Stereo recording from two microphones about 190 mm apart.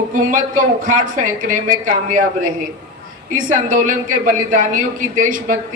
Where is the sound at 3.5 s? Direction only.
45° right (ahead or behind).